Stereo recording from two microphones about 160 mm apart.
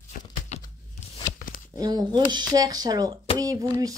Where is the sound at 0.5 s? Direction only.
45° left (ahead or behind).